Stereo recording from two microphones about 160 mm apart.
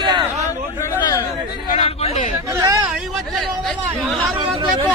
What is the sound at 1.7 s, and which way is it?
Chatter, 40° left (ahead or behind).